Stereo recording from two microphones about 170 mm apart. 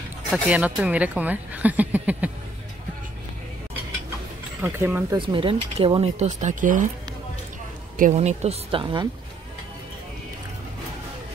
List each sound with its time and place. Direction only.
0.3 s speech: 5° right (ahead or behind)
4.6 s speech: 15° right (ahead or behind)
5.1 s speech: 30° right (ahead or behind); by 6.8 s 50° right (ahead or behind)
8.0 s speech: 40° right (ahead or behind)